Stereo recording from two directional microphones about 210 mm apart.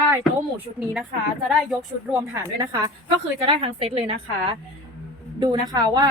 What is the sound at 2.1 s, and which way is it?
A woman's voice, 10° right (ahead or behind).